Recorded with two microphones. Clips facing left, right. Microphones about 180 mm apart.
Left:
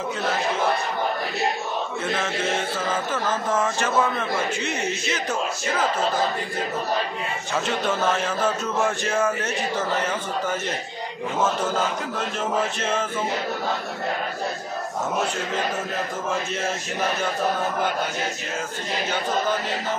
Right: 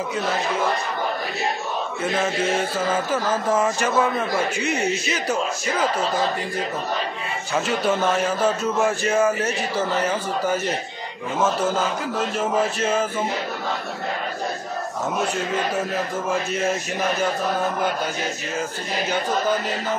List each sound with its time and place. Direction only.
3.1 s speech: 10° right (ahead or behind)
8.6 s speech: 10° right (ahead or behind)
12.4 s speech: 10° right (ahead or behind)